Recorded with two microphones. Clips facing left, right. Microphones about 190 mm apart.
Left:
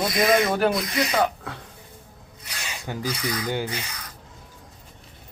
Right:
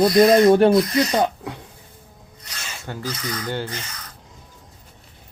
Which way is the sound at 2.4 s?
10° left (ahead or behind).